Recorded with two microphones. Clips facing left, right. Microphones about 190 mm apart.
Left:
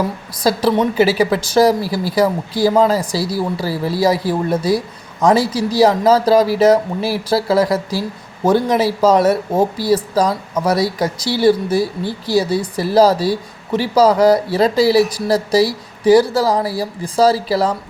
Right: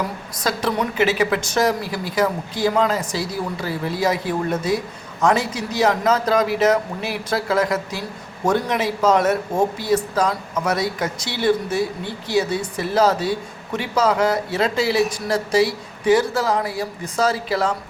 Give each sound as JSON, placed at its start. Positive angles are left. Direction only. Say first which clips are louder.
{"t": 0.4, "sound": "speech", "louder": "left 7 dB", "side_deg": 35}